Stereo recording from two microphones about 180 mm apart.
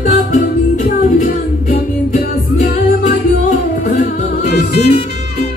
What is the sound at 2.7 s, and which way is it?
Music, 50° left (ahead or behind).